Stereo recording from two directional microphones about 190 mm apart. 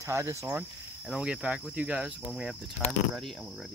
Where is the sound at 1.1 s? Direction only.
5° right (ahead or behind).